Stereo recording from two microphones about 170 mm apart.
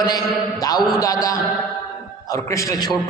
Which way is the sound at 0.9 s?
20° left (ahead or behind).